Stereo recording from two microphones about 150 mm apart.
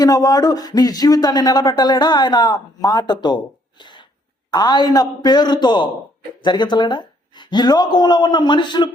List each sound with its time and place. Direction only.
0.0 s speech: 25° left (ahead or behind)